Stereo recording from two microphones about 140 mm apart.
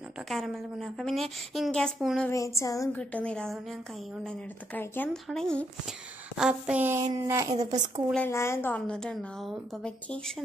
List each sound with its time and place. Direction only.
0.3 s a woman's voice: centre (ahead or behind)
2.2 s a sound: 20° left (ahead or behind)
3.0 s a woman's voice: 10° left (ahead or behind)
4.7 s a woman's voice: 15° left (ahead or behind); by 7.5 s 20° right (ahead or behind)
7.7 s a woman's voice: 30° right (ahead or behind)
8.3 s a woman's voice: 20° left (ahead or behind)